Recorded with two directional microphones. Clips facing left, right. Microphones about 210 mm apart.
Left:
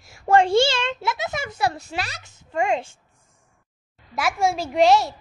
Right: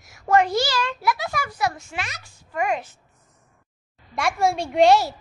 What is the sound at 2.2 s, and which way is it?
Speech, 20° left (ahead or behind).